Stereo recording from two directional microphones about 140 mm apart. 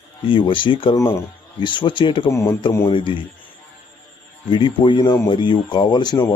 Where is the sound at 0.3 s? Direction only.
35° left (ahead or behind).